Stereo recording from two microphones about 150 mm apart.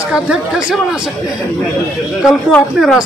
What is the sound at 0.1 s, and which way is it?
Speech, 5° right (ahead or behind).